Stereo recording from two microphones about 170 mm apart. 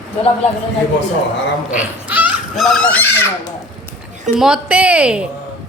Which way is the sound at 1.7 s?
10° right (ahead or behind).